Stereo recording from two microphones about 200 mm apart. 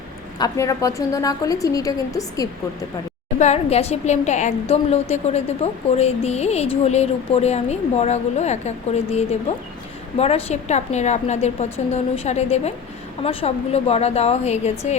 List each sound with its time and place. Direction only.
0.3 s a woman's voice: 15° left (ahead or behind)
3.3 s a woman's voice: 35° left (ahead or behind)